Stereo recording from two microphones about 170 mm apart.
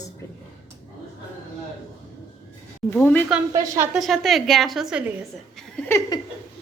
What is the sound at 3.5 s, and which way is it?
Speech, 20° right (ahead or behind).